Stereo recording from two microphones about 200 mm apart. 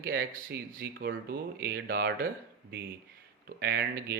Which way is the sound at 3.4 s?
55° right (ahead or behind).